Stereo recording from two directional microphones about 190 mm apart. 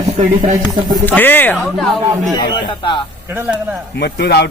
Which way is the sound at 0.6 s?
20° right (ahead or behind).